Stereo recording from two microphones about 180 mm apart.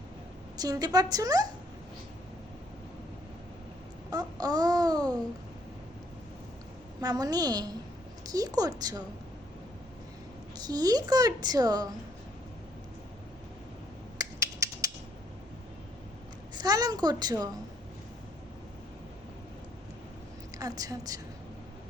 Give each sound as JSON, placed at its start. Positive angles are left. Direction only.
{"t": 0.5, "sound": "a woman's voice", "side_deg": -20}
{"t": 4.1, "sound": "a sound", "side_deg": -20}
{"t": 7.0, "sound": "a woman's voice", "side_deg": -20}
{"t": 10.6, "sound": "a woman's voice", "side_deg": -20}
{"t": 14.2, "sound": "a sound", "side_deg": -20}
{"t": 16.6, "sound": "a woman's voice", "side_deg": -20}
{"t": 20.6, "sound": "a woman's voice", "side_deg": -20}